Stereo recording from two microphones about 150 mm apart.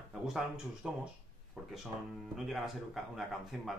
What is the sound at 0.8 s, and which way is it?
Speech, 5° right (ahead or behind).